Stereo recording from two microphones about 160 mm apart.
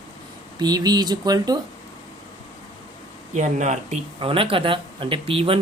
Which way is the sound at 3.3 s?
50° right (ahead or behind).